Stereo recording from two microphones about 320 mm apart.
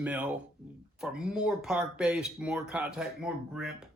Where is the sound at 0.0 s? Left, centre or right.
Centre.